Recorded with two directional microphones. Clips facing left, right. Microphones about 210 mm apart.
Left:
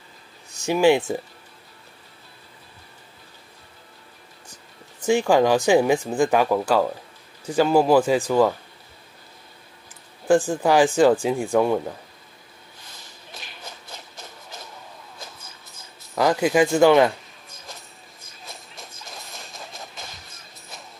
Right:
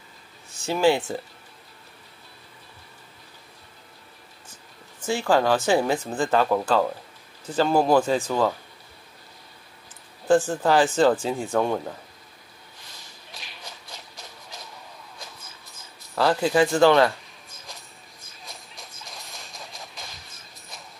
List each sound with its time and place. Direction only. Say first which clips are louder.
0.6 s speech: left 3 dB; 15° left (ahead or behind)
5.0 s speech: left 4 dB; 15° left (ahead or behind)
10.2 s speech: left 1 dB; 10° left (ahead or behind)
13.3 s shuffle: left 2 dB; centre (ahead or behind)
16.2 s speech: left 2 dB; 15° left (ahead or behind)
18.4 s music: left 3 dB; centre (ahead or behind)
19.5 s a sound: left 3 dB; centre (ahead or behind)